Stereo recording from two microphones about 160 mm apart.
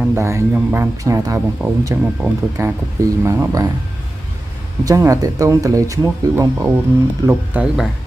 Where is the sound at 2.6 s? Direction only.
20° right (ahead or behind).